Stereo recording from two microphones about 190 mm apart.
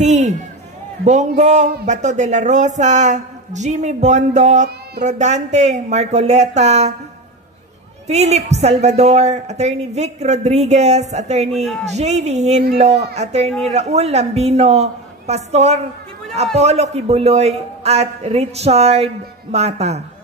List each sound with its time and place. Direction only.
0.0 s a sound: 35° right (ahead or behind)
1.0 s speech: 40° right (ahead or behind)
8.1 s speech: 35° right (ahead or behind)